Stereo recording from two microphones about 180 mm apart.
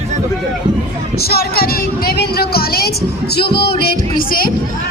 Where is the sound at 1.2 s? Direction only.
60° left (ahead or behind).